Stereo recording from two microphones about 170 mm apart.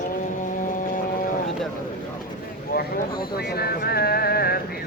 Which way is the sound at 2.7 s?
65° left (ahead or behind).